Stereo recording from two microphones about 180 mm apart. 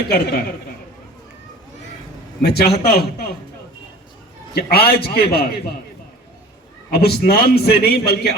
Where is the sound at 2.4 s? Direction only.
60° left (ahead or behind).